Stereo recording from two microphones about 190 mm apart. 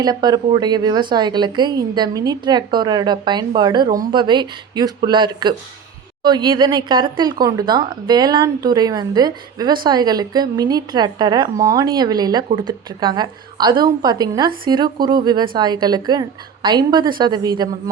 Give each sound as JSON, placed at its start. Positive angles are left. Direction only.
{"t": 0.0, "sound": "a woman's voice", "side_deg": -20}